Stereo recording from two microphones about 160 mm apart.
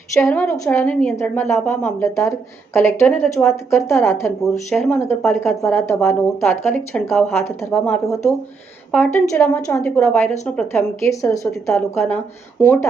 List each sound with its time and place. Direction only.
0.1 s a woman's voice: 15° left (ahead or behind)